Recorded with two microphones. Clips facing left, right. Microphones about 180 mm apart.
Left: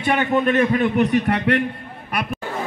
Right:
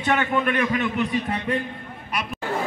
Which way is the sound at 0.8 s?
65° left (ahead or behind).